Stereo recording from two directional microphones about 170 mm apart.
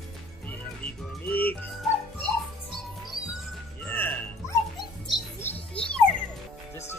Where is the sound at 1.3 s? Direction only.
10° left (ahead or behind).